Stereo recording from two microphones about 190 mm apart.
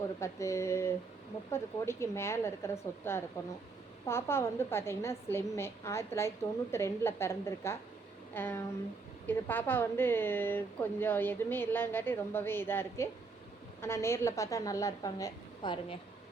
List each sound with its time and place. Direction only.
0.2 s a woman's voice: 15° left (ahead or behind)